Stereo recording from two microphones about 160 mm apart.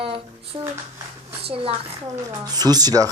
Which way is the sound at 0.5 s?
25° right (ahead or behind).